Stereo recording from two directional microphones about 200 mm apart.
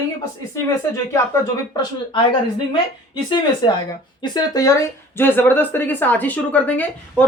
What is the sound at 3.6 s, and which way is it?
Speech, 20° left (ahead or behind).